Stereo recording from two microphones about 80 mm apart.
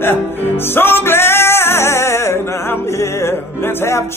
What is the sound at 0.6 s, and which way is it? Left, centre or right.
Music, left.